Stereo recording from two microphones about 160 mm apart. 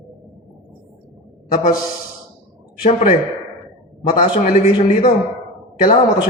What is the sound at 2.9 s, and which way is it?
Speech, 45° left (ahead or behind).